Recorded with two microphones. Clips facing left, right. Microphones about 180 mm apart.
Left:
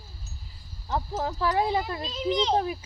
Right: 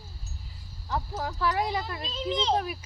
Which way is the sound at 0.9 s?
25° left (ahead or behind).